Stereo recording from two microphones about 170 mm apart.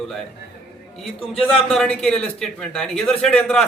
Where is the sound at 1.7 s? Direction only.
Centre (ahead or behind).